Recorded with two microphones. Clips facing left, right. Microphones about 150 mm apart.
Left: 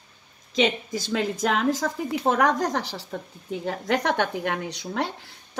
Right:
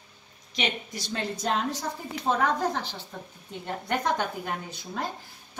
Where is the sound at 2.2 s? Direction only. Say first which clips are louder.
Left 3 dB; 75° left (ahead or behind).